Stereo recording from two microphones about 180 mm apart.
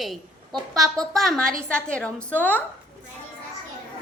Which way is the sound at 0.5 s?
20° right (ahead or behind).